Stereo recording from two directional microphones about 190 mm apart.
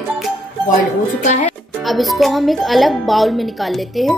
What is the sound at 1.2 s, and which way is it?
Speech, 40° left (ahead or behind).